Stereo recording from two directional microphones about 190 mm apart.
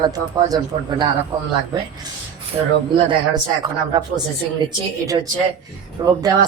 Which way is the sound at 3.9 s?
20° right (ahead or behind).